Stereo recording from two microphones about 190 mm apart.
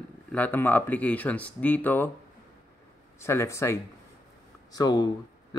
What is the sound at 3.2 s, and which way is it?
A man's voice, 15° left (ahead or behind).